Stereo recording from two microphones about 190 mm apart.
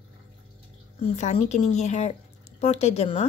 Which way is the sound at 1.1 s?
35° left (ahead or behind).